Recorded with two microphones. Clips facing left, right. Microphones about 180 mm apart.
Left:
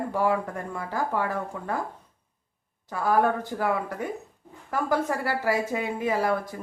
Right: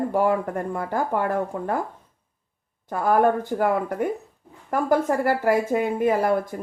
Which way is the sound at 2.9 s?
50° right (ahead or behind).